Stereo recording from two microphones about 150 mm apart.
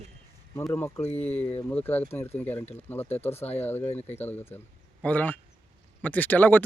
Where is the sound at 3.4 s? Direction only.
45° left (ahead or behind).